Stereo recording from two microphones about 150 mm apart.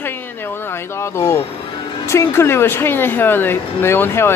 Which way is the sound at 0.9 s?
20° left (ahead or behind).